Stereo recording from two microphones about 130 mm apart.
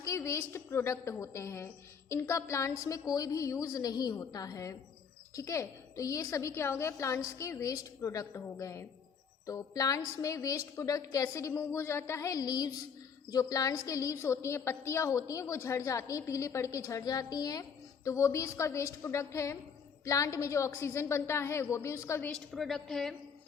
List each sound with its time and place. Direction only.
0.0 s a woman's voice: 25° left (ahead or behind)
22.3 s a woman's voice: centre (ahead or behind)